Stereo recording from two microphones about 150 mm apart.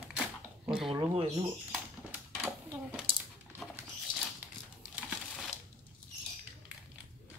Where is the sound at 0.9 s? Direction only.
35° right (ahead or behind).